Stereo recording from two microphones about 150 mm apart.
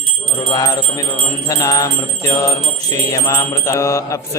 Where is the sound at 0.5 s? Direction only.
25° left (ahead or behind).